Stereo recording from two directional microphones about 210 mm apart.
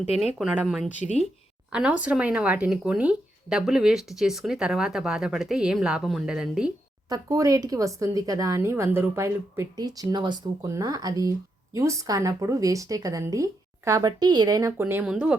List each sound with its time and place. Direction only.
0.3 s speech: 5° right (ahead or behind)
7.1 s speech: 15° right (ahead or behind)